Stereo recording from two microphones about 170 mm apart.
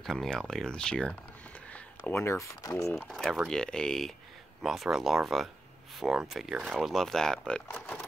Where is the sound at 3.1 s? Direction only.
Centre (ahead or behind).